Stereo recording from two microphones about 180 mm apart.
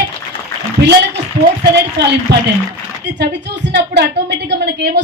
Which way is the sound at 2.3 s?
70° right (ahead or behind).